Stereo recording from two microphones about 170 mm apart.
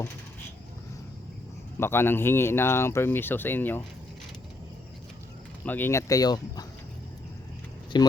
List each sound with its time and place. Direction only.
1.8 s speech: 15° left (ahead or behind)
5.6 s speech: 10° left (ahead or behind)
7.9 s speech: 25° left (ahead or behind)